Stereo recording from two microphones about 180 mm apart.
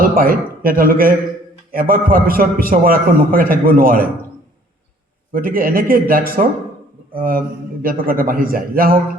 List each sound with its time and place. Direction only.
0.0 s a man's voice: 55° right (ahead or behind)
5.3 s a man's voice: 55° right (ahead or behind)